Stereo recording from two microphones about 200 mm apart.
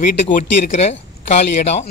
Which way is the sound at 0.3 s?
40° left (ahead or behind).